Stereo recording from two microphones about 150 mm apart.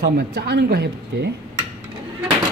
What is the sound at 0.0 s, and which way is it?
Speech, 90° right.